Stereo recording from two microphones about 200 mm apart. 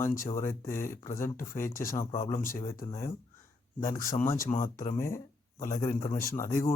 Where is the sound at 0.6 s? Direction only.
45° left (ahead or behind).